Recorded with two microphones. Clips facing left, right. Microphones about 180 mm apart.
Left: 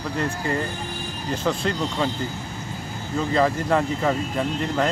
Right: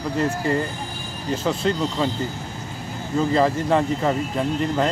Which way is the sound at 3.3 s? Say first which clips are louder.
Right 1 dB; centre (ahead or behind).